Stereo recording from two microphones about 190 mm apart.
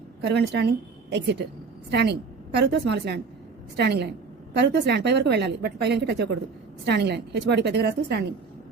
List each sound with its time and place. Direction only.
0.2 s a woman's voice: 65° right (ahead or behind)